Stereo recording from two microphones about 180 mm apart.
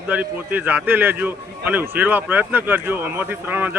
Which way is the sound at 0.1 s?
10° right (ahead or behind).